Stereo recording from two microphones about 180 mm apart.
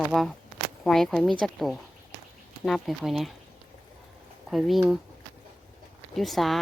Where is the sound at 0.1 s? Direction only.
Centre (ahead or behind).